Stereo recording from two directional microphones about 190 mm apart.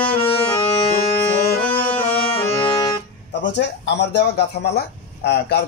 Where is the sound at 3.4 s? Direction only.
65° left (ahead or behind).